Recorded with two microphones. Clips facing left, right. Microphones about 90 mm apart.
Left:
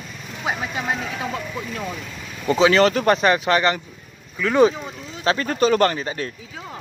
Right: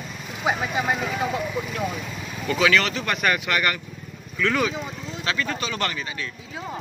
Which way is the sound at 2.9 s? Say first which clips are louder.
Left 9 dB; 45° left (ahead or behind).